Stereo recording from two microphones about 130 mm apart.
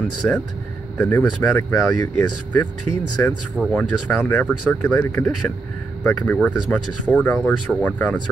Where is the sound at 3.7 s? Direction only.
15° left (ahead or behind).